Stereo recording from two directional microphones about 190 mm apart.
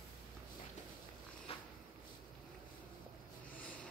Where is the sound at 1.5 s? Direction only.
30° left (ahead or behind).